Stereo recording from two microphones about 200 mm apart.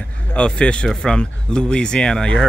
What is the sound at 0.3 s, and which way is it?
Speech, 5° left (ahead or behind).